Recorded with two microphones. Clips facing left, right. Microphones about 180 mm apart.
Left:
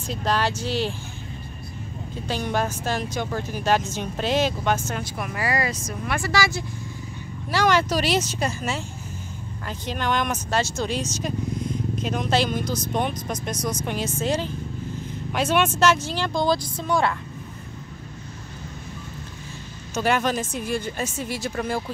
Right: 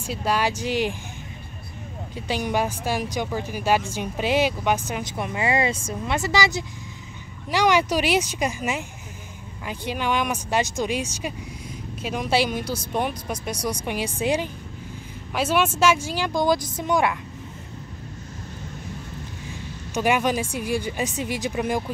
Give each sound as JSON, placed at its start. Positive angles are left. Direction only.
{"t": 0.0, "sound": "speech", "side_deg": -10}
{"t": 2.1, "sound": "a woman's voice", "side_deg": -10}
{"t": 19.9, "sound": "speech", "side_deg": -15}